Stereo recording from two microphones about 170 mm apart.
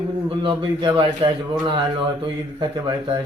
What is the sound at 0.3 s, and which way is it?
Speech, 30° right (ahead or behind).